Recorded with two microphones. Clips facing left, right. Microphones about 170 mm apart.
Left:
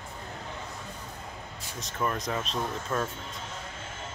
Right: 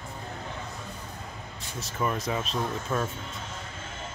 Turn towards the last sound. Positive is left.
turn(degrees=-5)  # may be behind; listen again after turning